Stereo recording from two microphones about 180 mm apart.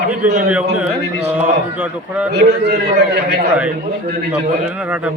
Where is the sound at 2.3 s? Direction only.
65° right (ahead or behind).